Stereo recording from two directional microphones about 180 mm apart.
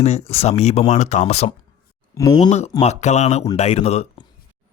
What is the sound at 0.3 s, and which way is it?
Speech, 35° left (ahead or behind).